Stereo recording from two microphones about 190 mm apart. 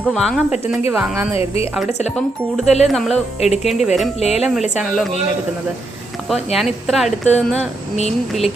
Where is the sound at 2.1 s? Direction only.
Centre (ahead or behind).